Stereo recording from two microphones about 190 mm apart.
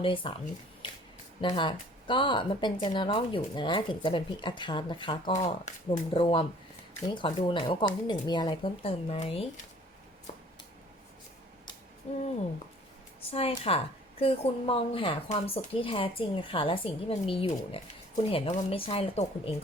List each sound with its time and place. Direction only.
0.0 s a woman's voice: 25° left (ahead or behind)
1.4 s a woman's voice: 25° left (ahead or behind)
5.3 s a woman's voice: 35° left (ahead or behind)
12.1 s speech: 35° left (ahead or behind)
13.3 s a woman's voice: 30° left (ahead or behind)